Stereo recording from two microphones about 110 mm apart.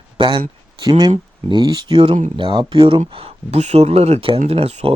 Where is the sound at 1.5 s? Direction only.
45° right (ahead or behind).